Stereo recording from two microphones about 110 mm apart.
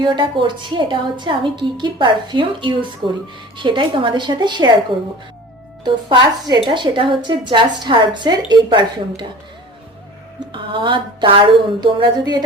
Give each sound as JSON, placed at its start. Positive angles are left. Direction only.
{"t": 0.0, "sound": "a woman's voice", "side_deg": -45}
{"t": 5.8, "sound": "a woman's voice", "side_deg": -45}
{"t": 10.4, "sound": "a woman's voice", "side_deg": -45}
{"t": 11.8, "sound": "a sound", "side_deg": -45}